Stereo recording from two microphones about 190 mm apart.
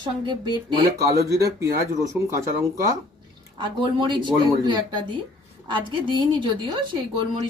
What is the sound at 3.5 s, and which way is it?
A woman's voice, 25° right (ahead or behind).